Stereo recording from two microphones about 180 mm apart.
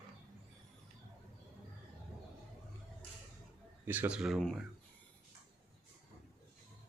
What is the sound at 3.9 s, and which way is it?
Speech, 10° right (ahead or behind).